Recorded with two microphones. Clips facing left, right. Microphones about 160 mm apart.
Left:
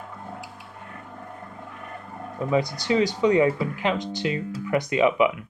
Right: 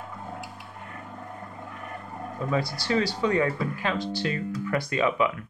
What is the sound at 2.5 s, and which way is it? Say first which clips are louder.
Speech: left 4 dB; 20° left (ahead or behind).